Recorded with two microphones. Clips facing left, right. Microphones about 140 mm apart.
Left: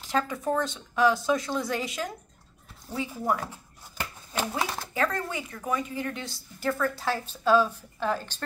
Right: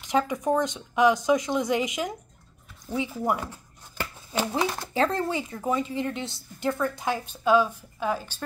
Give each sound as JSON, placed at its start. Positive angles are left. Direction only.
{"t": 0.0, "sound": "a woman's voice", "side_deg": -15}
{"t": 4.4, "sound": "speech", "side_deg": 0}
{"t": 4.9, "sound": "a woman's voice", "side_deg": -25}